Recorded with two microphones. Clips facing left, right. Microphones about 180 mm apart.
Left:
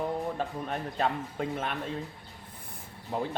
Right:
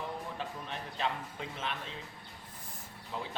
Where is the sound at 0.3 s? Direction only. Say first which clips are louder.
Left 7 dB; 50° left (ahead or behind).